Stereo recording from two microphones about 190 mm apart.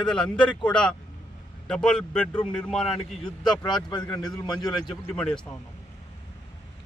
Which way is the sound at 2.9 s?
25° left (ahead or behind).